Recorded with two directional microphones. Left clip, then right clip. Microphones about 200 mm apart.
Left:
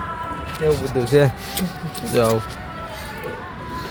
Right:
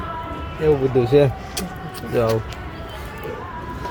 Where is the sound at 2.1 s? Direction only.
20° left (ahead or behind).